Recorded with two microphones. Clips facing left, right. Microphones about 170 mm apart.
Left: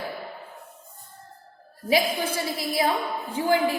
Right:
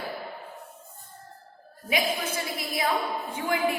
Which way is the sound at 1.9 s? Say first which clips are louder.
Left 4 dB; 30° left (ahead or behind).